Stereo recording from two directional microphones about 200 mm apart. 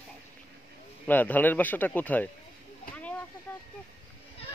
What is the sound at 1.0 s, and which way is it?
Speech, 10° left (ahead or behind).